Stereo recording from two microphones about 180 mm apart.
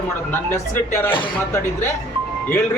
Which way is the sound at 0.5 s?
15° left (ahead or behind).